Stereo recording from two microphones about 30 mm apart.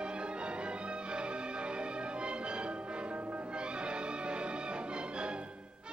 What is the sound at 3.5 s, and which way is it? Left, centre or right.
Music, right.